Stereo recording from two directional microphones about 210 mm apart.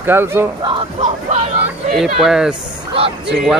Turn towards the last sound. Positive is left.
turn(degrees=0)  # may be behind; listen again after turning